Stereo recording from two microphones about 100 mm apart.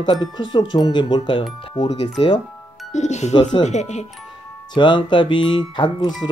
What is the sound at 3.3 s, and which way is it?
Speech, 50° left (ahead or behind).